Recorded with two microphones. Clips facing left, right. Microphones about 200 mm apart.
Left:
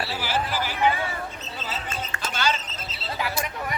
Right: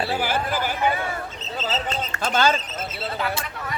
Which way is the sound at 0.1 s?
55° right (ahead or behind).